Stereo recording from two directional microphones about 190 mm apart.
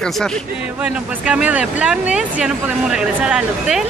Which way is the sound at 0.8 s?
5° right (ahead or behind).